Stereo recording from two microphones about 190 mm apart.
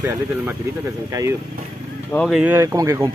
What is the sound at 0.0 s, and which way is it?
Speech, 15° right (ahead or behind).